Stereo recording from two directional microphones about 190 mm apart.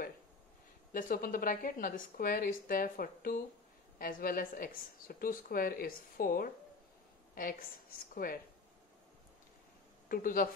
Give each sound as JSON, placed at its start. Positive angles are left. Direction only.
{"t": 0.9, "sound": "a woman's voice", "side_deg": 45}
{"t": 10.0, "sound": "a woman's voice", "side_deg": 45}